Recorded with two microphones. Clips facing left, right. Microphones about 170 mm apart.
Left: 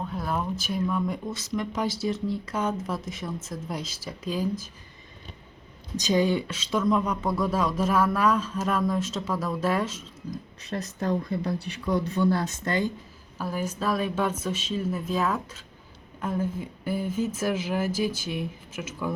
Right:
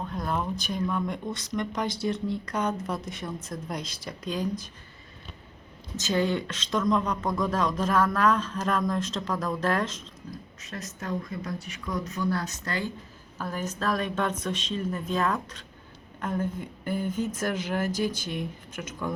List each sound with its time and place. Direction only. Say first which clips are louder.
0.1 s speech: right 1 dB; 5° left (ahead or behind)
6.0 s speech: left 3 dB; 15° left (ahead or behind)
10.3 s speech: left 8 dB; 35° left (ahead or behind)
13.4 s speech: left 2 dB; 10° left (ahead or behind)